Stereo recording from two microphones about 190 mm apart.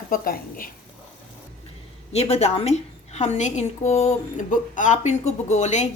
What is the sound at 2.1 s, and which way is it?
A woman's voice, 35° left (ahead or behind).